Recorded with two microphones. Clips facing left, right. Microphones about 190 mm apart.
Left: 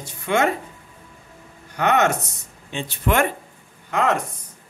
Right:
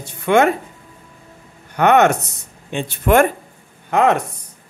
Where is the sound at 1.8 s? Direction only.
60° right (ahead or behind).